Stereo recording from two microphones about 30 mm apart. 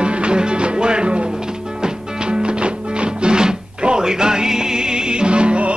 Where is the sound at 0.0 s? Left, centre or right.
Right.